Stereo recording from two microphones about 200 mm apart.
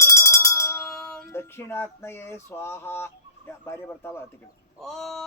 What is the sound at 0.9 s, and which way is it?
Music, 5° left (ahead or behind).